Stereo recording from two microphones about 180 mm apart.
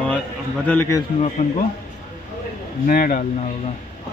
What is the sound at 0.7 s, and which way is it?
Speech, 15° left (ahead or behind).